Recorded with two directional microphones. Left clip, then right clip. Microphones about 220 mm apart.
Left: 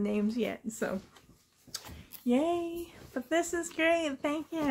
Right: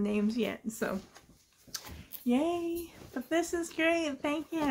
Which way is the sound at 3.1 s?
10° left (ahead or behind).